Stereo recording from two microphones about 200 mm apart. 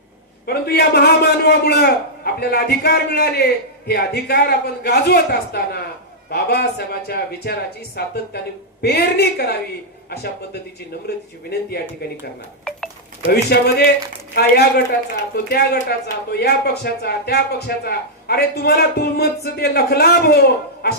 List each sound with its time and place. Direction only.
0.4 s a man's voice: 55° left (ahead or behind)
13.2 s a man's voice: 50° left (ahead or behind)